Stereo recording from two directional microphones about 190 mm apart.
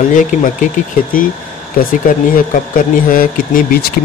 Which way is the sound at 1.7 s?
45° left (ahead or behind).